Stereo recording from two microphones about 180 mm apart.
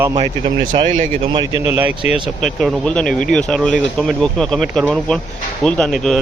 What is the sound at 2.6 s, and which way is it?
Speech, 5° left (ahead or behind).